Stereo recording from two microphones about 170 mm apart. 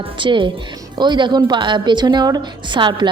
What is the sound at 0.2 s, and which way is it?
A woman's voice, 30° right (ahead or behind).